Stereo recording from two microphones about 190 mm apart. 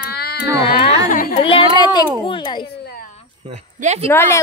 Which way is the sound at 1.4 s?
30° left (ahead or behind).